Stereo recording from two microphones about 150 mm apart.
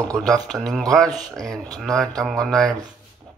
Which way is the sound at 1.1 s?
25° right (ahead or behind).